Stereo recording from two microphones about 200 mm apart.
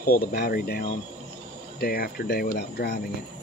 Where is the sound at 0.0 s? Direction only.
50° left (ahead or behind).